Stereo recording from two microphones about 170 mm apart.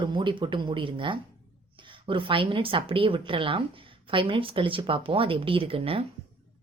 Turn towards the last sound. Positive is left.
turn(degrees=-35)  # may be behind; listen again after turning